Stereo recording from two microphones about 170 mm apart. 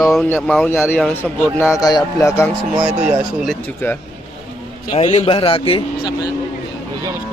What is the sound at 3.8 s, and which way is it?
Speech, 15° left (ahead or behind).